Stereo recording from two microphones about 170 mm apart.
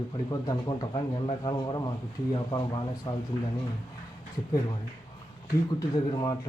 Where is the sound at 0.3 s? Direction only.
25° left (ahead or behind).